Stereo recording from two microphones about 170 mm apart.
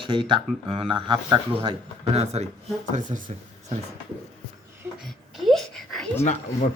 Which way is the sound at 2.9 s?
50° right (ahead or behind).